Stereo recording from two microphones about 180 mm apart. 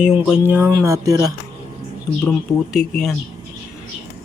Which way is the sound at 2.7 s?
5° left (ahead or behind).